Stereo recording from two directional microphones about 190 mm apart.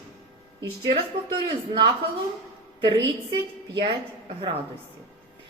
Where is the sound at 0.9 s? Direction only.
25° right (ahead or behind).